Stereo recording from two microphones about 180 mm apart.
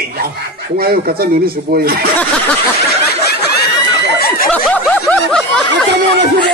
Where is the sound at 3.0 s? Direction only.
60° left (ahead or behind).